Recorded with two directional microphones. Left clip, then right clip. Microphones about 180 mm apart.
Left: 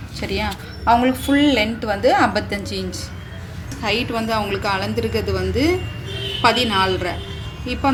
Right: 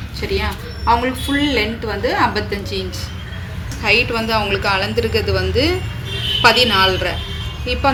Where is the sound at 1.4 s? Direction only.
75° left (ahead or behind).